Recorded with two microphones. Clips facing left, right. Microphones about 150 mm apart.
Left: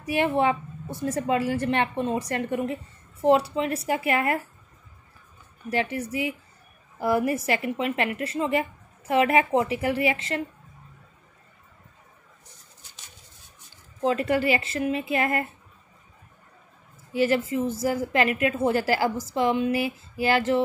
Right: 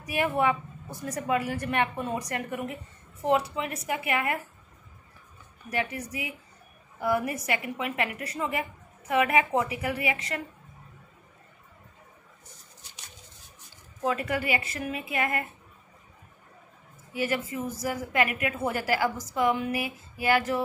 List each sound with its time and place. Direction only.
0.0 s a woman's voice: 30° left (ahead or behind)
5.7 s a woman's voice: 30° left (ahead or behind)
14.0 s a woman's voice: 30° left (ahead or behind)
17.1 s a woman's voice: 30° left (ahead or behind)